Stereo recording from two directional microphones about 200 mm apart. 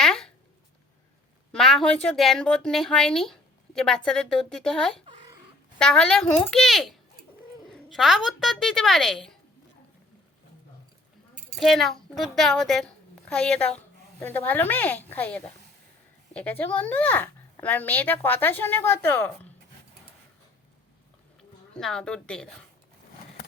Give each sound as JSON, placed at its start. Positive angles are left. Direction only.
{"t": 0.0, "sound": "a sound", "side_deg": 0}
{"t": 1.5, "sound": "speech", "side_deg": 0}
{"t": 11.5, "sound": "a woman's voice", "side_deg": 0}
{"t": 21.8, "sound": "speech", "side_deg": 5}